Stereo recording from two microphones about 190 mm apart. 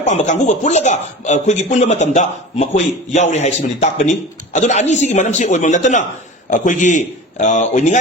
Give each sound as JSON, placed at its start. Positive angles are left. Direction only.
{"t": 0.0, "sound": "speech", "side_deg": 35}